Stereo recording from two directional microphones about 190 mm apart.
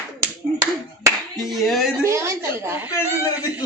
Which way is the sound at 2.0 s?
15° right (ahead or behind).